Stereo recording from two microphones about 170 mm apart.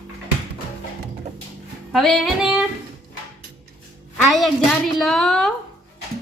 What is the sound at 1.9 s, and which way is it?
Speech, centre (ahead or behind).